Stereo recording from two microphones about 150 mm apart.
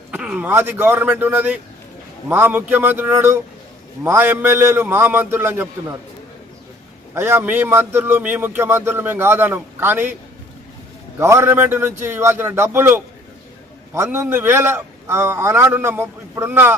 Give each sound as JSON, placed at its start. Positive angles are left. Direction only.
{"t": 0.1, "sound": "a man's voice", "side_deg": -10}
{"t": 7.1, "sound": "a man's voice", "side_deg": -15}
{"t": 11.2, "sound": "a man's voice", "side_deg": -20}